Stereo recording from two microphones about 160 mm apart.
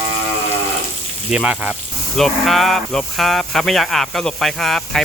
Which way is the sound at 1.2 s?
5° right (ahead or behind).